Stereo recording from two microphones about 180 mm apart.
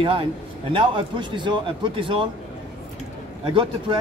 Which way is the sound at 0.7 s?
25° right (ahead or behind).